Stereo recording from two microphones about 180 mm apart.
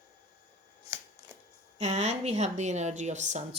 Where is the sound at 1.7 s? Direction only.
40° right (ahead or behind).